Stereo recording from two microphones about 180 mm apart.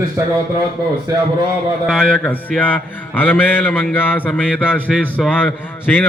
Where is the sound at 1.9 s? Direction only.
5° left (ahead or behind).